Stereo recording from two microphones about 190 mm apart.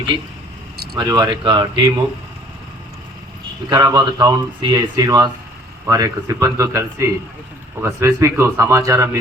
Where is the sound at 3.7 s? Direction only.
20° right (ahead or behind).